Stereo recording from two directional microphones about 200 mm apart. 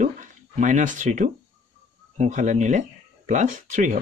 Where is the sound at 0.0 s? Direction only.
40° right (ahead or behind).